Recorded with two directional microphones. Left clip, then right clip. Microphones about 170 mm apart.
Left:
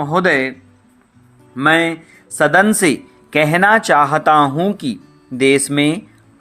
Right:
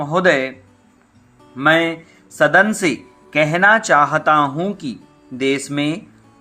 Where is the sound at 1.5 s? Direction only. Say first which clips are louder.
Left 1 dB; 30° left (ahead or behind).